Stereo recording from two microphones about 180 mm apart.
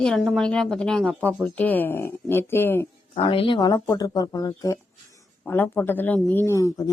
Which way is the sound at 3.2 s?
30° left (ahead or behind).